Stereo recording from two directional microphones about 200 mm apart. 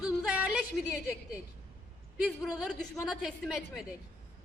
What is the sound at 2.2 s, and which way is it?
A man's voice, centre (ahead or behind).